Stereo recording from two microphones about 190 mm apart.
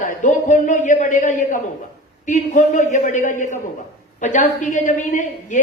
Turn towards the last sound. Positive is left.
turn(degrees=40)  # may be behind; listen again after turning